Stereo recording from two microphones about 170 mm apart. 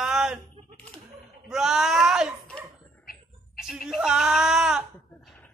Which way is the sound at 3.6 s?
55° left (ahead or behind).